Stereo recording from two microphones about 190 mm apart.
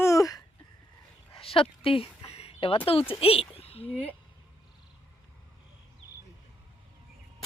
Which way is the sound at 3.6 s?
30° left (ahead or behind).